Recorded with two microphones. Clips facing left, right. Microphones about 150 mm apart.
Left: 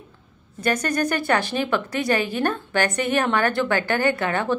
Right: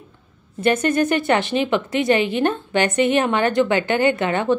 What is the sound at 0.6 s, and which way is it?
A woman's voice, 25° right (ahead or behind).